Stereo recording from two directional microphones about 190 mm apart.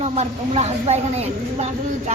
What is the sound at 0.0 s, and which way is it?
A woman's voice, 35° right (ahead or behind).